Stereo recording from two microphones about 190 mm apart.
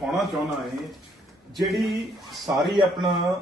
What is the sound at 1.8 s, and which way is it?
Speech, centre (ahead or behind).